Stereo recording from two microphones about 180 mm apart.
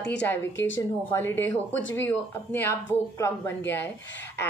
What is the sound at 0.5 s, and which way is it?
Speech, 90° left.